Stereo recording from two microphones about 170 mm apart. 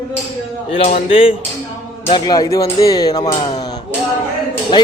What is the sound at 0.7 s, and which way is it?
Speech, 35° left (ahead or behind).